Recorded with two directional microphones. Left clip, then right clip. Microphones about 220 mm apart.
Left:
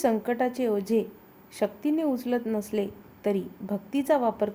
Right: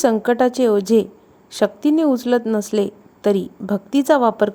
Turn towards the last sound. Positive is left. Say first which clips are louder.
# right 9 dB
turn(degrees=-35)  # may be behind; listen again after turning